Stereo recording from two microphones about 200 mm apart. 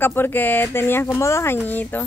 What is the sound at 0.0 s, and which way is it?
A woman's voice, 10° left (ahead or behind).